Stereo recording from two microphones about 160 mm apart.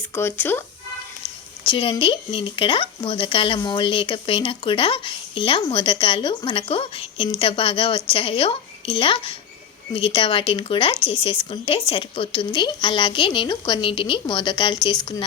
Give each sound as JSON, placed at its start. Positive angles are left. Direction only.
{"t": 0.1, "sound": "speech", "side_deg": 15}
{"t": 1.6, "sound": "speech", "side_deg": 30}